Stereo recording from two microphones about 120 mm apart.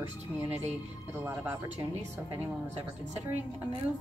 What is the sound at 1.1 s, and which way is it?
Speech, 20° right (ahead or behind).